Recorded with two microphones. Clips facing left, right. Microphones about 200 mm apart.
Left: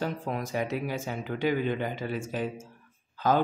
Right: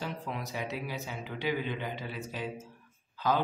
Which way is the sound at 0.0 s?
50° left (ahead or behind).